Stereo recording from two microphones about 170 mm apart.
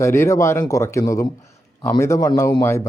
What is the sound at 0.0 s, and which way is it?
Speech, 15° left (ahead or behind).